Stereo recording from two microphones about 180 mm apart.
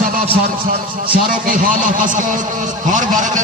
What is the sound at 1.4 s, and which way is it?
A man's voice, 50° right (ahead or behind).